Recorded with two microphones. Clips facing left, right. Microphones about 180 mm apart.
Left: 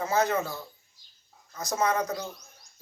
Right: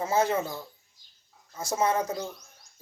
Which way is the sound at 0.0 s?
30° right (ahead or behind).